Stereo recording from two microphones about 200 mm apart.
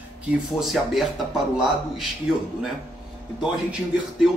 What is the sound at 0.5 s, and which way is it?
Speech, centre (ahead or behind).